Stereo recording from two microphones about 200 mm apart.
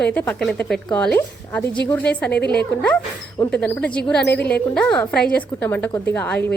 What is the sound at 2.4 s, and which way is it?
Speech, 55° left (ahead or behind).